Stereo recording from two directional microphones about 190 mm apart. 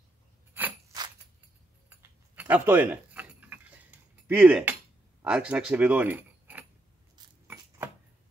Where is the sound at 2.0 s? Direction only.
10° right (ahead or behind).